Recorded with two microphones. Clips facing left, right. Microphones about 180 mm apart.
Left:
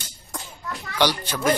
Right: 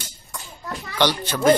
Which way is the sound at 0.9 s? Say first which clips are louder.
Right 1 dB; 10° left (ahead or behind).